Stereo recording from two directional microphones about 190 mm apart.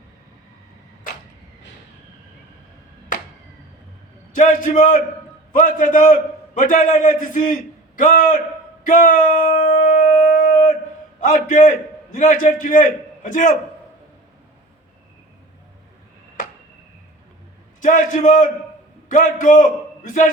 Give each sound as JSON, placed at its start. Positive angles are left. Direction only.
{"t": 4.4, "sound": "a man's voice", "side_deg": 45}
{"t": 8.9, "sound": "a sound", "side_deg": 45}
{"t": 11.3, "sound": "a man's voice", "side_deg": 40}
{"t": 17.8, "sound": "a man's voice", "side_deg": 45}